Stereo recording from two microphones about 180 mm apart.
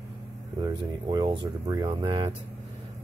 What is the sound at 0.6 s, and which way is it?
Speech, 25° right (ahead or behind).